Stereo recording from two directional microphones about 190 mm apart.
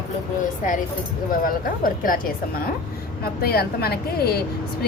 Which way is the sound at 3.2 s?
55° left (ahead or behind).